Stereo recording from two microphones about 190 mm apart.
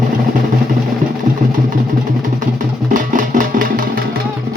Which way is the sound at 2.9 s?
45° right (ahead or behind).